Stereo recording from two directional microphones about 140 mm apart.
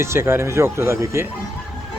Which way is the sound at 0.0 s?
20° right (ahead or behind).